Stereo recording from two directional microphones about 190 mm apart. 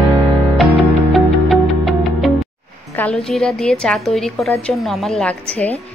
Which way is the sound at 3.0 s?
5° left (ahead or behind).